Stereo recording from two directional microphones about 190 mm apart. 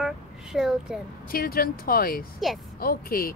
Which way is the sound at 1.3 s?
50° left (ahead or behind).